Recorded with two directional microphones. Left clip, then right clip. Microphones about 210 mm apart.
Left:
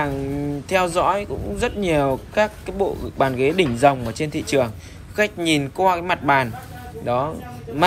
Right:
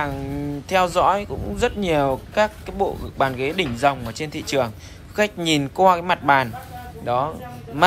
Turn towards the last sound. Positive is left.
turn(degrees=-10)  # may be behind; listen again after turning